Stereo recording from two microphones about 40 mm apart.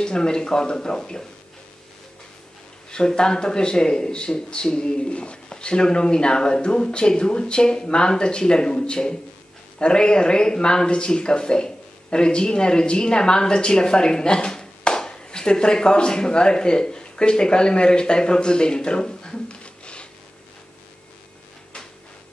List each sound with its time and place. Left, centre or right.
0.0 s speech: centre
2.9 s speech: left